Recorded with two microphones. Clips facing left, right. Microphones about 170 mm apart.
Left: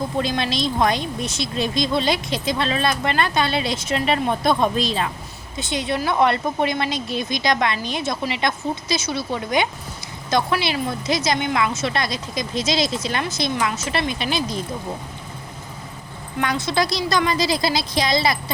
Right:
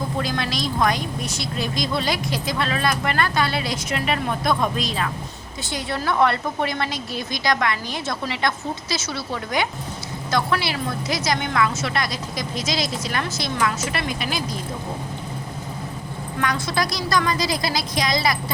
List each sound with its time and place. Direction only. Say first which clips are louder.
0.2 s a woman's voice: left 4 dB; 25° left (ahead or behind)
16.4 s a woman's voice: left 2 dB; 25° left (ahead or behind)